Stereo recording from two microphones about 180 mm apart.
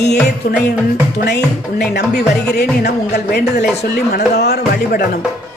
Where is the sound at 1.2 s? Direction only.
70° left (ahead or behind).